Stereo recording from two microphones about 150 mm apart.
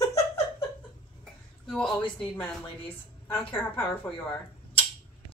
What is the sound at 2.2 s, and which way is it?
Speech, 10° left (ahead or behind).